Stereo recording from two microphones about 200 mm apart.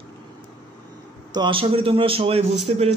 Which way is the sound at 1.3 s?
25° right (ahead or behind).